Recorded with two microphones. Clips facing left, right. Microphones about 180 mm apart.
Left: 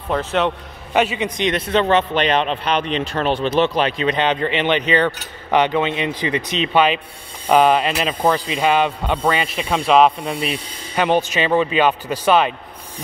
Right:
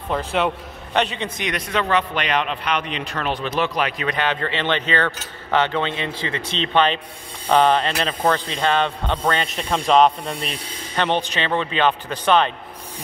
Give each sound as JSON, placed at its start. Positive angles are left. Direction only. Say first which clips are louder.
{"t": 0.1, "sound": "a man's voice", "louder": "left 2 dB", "side_deg": 0}
{"t": 1.4, "sound": "speech", "louder": "left 6 dB", "side_deg": 25}